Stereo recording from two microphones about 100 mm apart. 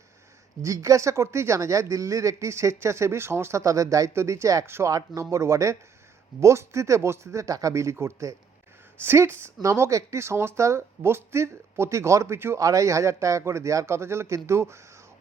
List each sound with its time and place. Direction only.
0.6 s speech: 30° right (ahead or behind)